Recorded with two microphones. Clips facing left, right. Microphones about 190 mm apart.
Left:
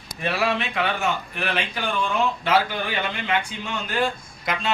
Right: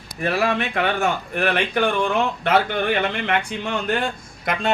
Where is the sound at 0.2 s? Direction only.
45° right (ahead or behind).